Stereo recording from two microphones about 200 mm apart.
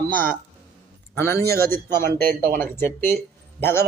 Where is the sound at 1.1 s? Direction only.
15° left (ahead or behind).